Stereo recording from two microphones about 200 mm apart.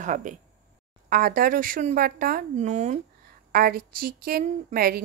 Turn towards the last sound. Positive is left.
turn(degrees=-50)  # may be behind; listen again after turning